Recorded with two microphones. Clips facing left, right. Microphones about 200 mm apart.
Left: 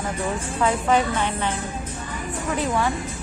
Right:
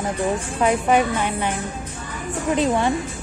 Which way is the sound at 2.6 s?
20° right (ahead or behind).